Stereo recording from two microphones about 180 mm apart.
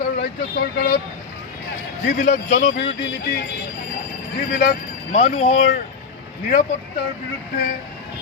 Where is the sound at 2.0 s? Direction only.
45° left (ahead or behind).